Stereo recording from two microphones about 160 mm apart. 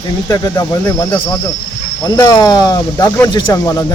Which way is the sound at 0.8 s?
10° left (ahead or behind).